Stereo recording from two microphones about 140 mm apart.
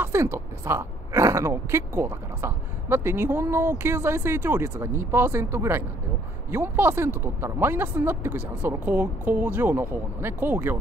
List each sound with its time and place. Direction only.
0.0 s speech: 20° right (ahead or behind)